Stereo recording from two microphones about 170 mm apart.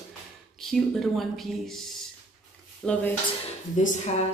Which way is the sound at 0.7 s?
Centre (ahead or behind).